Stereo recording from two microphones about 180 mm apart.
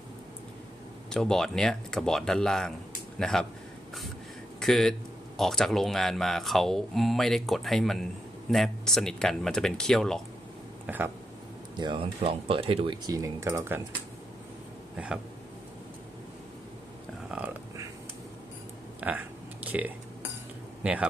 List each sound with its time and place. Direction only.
1.1 s speech: 5° left (ahead or behind)
4.6 s speech: centre (ahead or behind)
10.9 s speech: 10° right (ahead or behind)
11.7 s speech: 25° right (ahead or behind)
13.1 s speech: 15° right (ahead or behind)
18.9 s a sound: 10° right (ahead or behind)
20.8 s speech: 5° right (ahead or behind)